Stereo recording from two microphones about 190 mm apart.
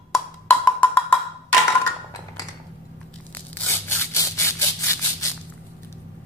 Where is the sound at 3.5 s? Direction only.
15° left (ahead or behind).